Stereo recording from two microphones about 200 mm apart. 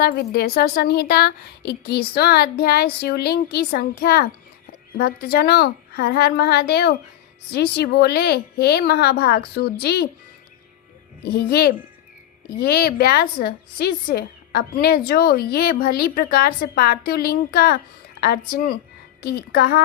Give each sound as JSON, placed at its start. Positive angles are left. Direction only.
{"t": 0.0, "sound": "a woman's voice", "side_deg": 50}
{"t": 11.3, "sound": "a woman's voice", "side_deg": 50}